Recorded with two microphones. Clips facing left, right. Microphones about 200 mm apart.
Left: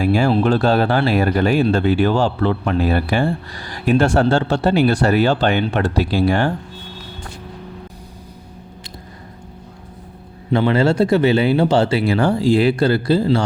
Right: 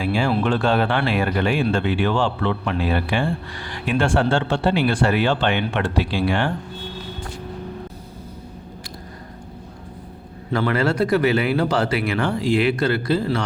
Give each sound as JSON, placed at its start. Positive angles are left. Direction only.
{"t": 0.0, "sound": "speech", "side_deg": 45}
{"t": 10.5, "sound": "speech", "side_deg": 25}